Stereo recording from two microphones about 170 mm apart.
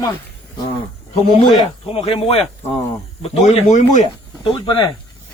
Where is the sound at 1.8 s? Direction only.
35° left (ahead or behind).